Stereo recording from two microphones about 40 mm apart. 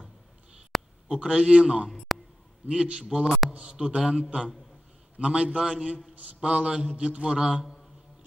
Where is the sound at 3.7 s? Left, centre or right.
Centre.